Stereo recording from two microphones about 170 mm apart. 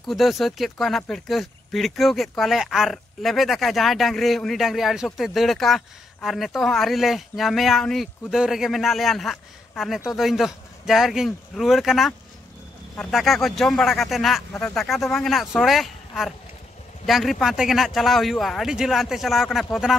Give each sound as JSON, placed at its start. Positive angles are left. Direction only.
{"t": 0.0, "sound": "speech", "side_deg": 0}